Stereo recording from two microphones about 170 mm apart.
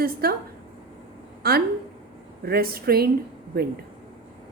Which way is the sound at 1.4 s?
65° right (ahead or behind).